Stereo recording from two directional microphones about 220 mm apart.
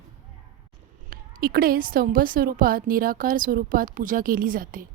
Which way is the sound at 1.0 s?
40° right (ahead or behind).